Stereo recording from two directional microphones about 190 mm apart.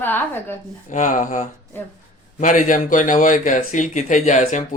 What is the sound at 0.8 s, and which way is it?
Speech, 40° left (ahead or behind).